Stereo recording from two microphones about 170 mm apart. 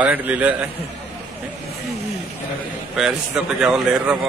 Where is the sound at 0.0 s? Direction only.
10° right (ahead or behind).